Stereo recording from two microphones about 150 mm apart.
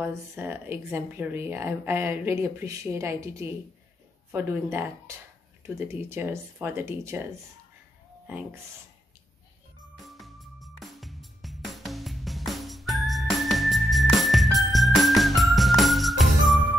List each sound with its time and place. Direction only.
0.0 s speech: 15° right (ahead or behind)
8.3 s speech: 10° right (ahead or behind)
9.9 s music: centre (ahead or behind)